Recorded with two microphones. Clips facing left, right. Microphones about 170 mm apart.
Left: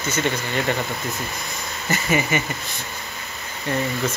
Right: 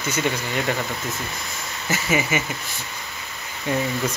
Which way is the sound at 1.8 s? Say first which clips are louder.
Left 1 dB; 5° right (ahead or behind).